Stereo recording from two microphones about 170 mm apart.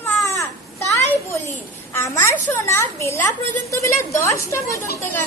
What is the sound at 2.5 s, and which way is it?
A woman's voice, 15° left (ahead or behind).